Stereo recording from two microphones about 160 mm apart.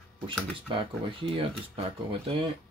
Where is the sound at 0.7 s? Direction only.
35° right (ahead or behind).